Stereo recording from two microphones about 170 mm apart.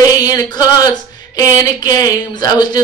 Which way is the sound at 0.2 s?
20° left (ahead or behind).